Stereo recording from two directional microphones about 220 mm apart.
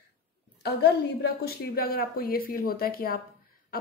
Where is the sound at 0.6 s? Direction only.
45° left (ahead or behind).